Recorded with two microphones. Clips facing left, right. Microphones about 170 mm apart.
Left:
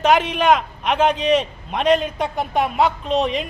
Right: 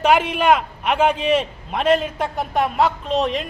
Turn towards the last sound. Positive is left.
turn(degrees=0)  # may be behind; listen again after turning